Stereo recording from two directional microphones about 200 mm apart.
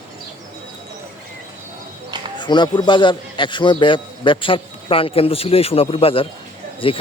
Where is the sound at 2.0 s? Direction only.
20° right (ahead or behind).